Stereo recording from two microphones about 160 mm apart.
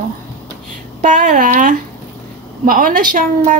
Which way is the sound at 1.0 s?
50° right (ahead or behind).